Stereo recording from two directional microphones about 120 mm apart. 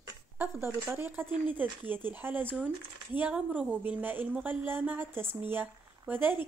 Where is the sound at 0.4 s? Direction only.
20° right (ahead or behind).